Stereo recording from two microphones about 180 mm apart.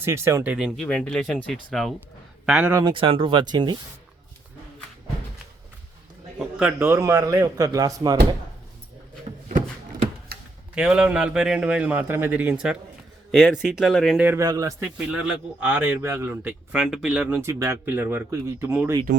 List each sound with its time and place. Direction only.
0.0 s speech: 15° right (ahead or behind)
0.5 s a man's voice: centre (ahead or behind)
2.8 s speech: 30° right (ahead or behind)
6.6 s speech: 10° right (ahead or behind)
10.3 s a sound: 60° right (ahead or behind)
10.8 s a man's voice: 5° right (ahead or behind)
14.3 s speech: 20° right (ahead or behind)
14.8 s speech: 5° right (ahead or behind)